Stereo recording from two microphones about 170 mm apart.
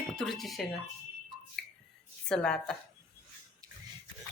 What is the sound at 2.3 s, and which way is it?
Speech, 5° left (ahead or behind).